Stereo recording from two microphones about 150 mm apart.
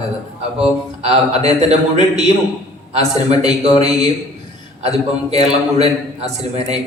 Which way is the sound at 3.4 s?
40° right (ahead or behind).